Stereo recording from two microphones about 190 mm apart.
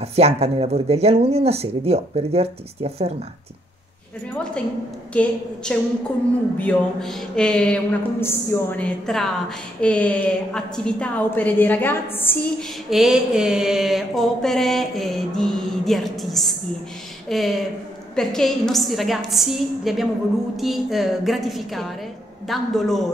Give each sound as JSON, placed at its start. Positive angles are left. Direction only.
{"t": 0.0, "sound": "speech", "side_deg": -35}
{"t": 5.1, "sound": "mantra", "side_deg": 5}
{"t": 9.8, "sound": "a woman's voice", "side_deg": 5}
{"t": 12.9, "sound": "mantra", "side_deg": -5}